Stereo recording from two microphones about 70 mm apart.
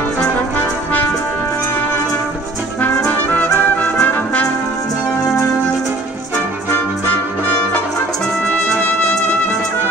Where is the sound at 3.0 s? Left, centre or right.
Left.